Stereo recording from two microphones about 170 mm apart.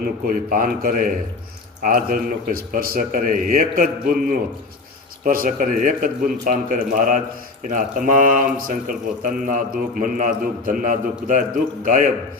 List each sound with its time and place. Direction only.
0.0 s a man's voice: 55° right (ahead or behind)